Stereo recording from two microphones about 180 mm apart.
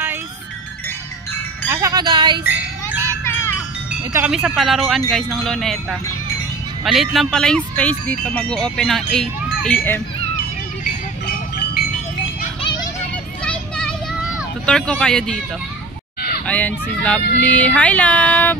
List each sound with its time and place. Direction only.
1.7 s wind chime: 15° right (ahead or behind)
3.3 s wind chime: 15° left (ahead or behind)
4.1 s speech: 5° right (ahead or behind)
10.8 s music: 60° left (ahead or behind)
13.4 s children playing: 5° left (ahead or behind)
16.4 s child singing: 10° left (ahead or behind)